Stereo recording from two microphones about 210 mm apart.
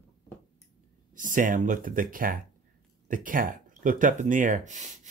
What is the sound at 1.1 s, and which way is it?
Speech, 40° right (ahead or behind).